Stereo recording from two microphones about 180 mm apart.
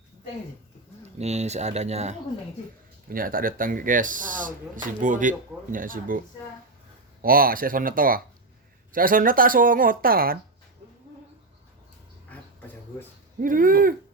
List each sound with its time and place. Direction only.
1.2 s speech: 40° right (ahead or behind)
3.1 s speech: 50° right (ahead or behind)
7.2 s speech: 55° right (ahead or behind)
12.3 s a sound: 10° left (ahead or behind)
13.4 s speech: 50° right (ahead or behind)